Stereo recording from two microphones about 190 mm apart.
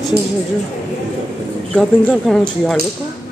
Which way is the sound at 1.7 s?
5° left (ahead or behind).